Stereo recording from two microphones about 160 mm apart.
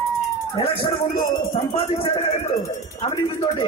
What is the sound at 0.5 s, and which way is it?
Speech, 30° left (ahead or behind).